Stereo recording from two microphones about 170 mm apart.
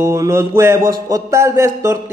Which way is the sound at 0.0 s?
15° right (ahead or behind).